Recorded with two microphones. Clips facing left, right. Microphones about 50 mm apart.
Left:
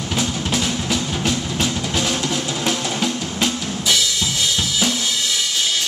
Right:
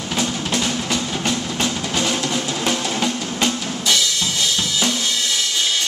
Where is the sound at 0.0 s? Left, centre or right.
Centre.